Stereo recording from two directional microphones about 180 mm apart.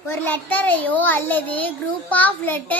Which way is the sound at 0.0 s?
10° left (ahead or behind).